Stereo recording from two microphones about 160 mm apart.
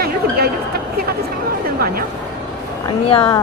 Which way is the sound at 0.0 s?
75° right (ahead or behind).